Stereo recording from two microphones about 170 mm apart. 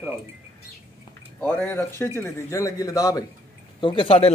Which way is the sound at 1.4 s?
15° left (ahead or behind).